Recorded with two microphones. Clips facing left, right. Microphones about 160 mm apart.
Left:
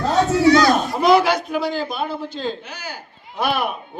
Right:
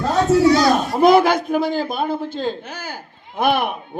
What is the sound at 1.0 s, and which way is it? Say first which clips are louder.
A man's voice: right 3 dB; 50° right (ahead or behind).